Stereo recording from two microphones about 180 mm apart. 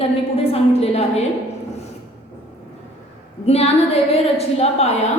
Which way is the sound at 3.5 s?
35° left (ahead or behind).